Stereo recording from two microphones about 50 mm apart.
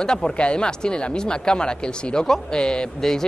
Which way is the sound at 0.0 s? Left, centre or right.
Centre.